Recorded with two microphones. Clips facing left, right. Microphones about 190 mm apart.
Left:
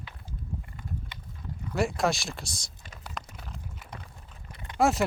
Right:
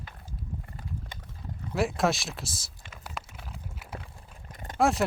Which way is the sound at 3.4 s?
5° right (ahead or behind).